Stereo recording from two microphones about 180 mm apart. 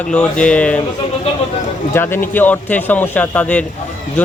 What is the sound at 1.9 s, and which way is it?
Speech, 10° left (ahead or behind).